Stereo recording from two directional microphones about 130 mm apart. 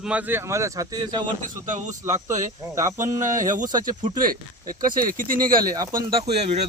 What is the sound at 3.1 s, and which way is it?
Speech, 80° right.